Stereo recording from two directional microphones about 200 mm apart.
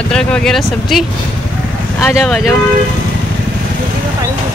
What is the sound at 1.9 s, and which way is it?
Speech, centre (ahead or behind).